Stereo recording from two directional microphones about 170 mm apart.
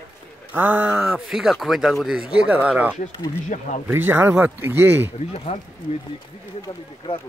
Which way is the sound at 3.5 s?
45° left (ahead or behind).